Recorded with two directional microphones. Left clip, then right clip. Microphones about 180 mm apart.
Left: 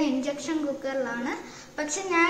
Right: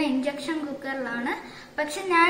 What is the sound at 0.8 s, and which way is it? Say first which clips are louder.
A woman's voice: even; 15° right (ahead or behind).